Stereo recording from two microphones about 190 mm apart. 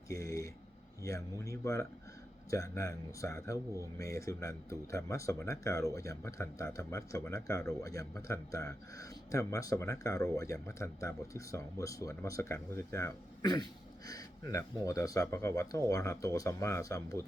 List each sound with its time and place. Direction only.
0.2 s speech: 15° left (ahead or behind)
1.6 s speech: 15° left (ahead or behind)